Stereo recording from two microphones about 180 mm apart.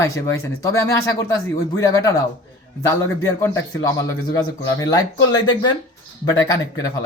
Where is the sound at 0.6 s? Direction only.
20° left (ahead or behind).